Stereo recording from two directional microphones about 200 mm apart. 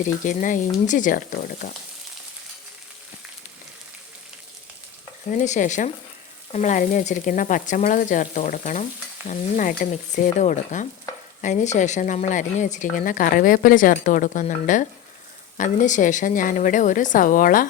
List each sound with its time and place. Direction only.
0.3 s a woman's voice: 40° left (ahead or behind)
5.3 s a woman's voice: 40° left (ahead or behind)